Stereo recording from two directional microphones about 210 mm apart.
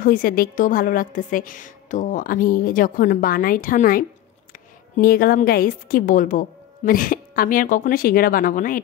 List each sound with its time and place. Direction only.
0.0 s a woman's voice: 40° left (ahead or behind)